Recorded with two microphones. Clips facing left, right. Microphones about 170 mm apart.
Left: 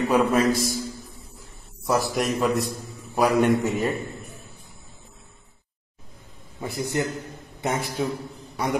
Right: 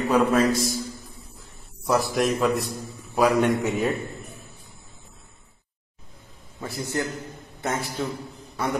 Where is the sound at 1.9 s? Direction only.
Centre (ahead or behind).